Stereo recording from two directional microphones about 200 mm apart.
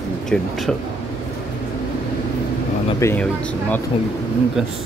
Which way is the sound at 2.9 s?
15° left (ahead or behind).